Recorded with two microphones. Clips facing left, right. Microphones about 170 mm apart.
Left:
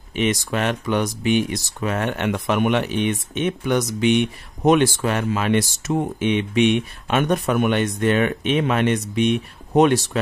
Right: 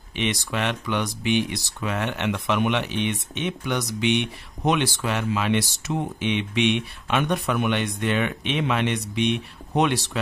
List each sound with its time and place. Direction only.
0.1 s speech: 45° left (ahead or behind)